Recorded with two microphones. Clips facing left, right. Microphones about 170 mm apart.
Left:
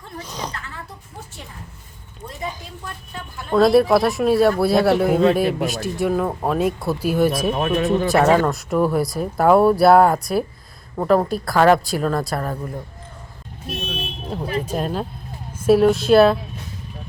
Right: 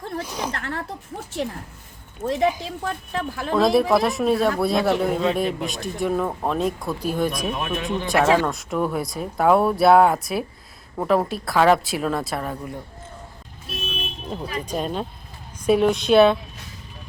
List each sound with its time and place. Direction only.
0.3 s a sound: 10° right (ahead or behind)
0.5 s speech: 65° right (ahead or behind)
2.2 s a woman's voice: 90° right
3.5 s speech: centre (ahead or behind)
7.5 s speech: 40° left (ahead or behind)
8.0 s speech: centre (ahead or behind)
13.7 s car alarm: 70° left (ahead or behind)
14.6 s speech: 5° left (ahead or behind)